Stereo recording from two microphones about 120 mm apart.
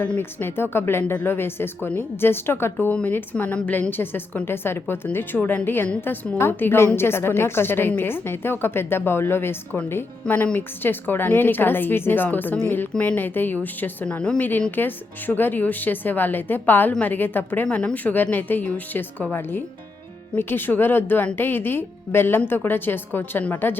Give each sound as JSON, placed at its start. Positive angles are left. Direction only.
{"t": 0.0, "sound": "speech", "side_deg": 15}